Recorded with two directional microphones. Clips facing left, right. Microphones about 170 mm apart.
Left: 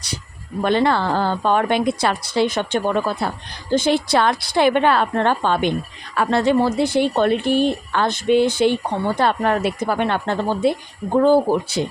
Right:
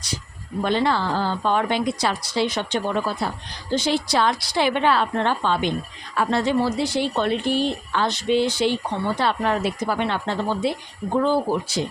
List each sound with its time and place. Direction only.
0.6 s a woman's voice: 60° left (ahead or behind)